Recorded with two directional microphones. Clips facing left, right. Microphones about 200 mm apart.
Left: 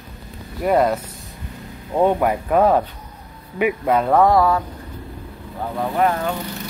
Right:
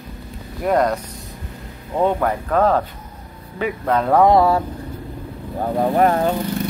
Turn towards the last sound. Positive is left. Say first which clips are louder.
# right 4 dB
turn(degrees=-35)  # may be behind; listen again after turning